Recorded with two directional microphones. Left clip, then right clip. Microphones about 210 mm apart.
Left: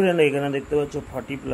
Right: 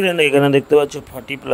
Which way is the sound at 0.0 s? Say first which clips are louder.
Right 5 dB; 45° right (ahead or behind).